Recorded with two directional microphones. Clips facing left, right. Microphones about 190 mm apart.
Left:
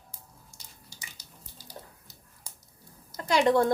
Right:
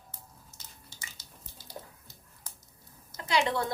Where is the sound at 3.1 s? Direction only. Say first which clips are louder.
Left 6 dB; 40° left (ahead or behind).